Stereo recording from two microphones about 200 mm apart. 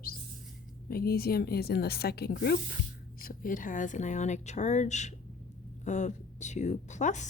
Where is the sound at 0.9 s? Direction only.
50° left (ahead or behind).